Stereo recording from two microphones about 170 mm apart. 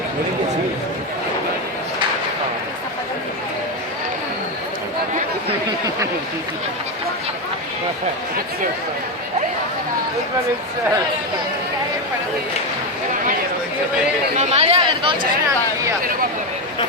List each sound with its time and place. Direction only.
14.3 s speech: 40° right (ahead or behind); by 15.9 s 25° right (ahead or behind)